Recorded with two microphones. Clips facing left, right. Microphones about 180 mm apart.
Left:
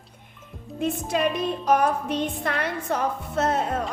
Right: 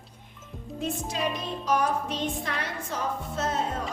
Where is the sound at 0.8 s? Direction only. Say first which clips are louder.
Left 6 dB; 60° left (ahead or behind).